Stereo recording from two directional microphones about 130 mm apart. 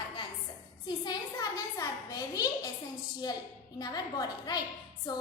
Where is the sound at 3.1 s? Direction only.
30° left (ahead or behind).